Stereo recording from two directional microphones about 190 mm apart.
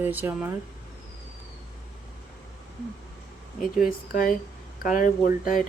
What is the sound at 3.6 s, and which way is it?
Speech, 45° left (ahead or behind).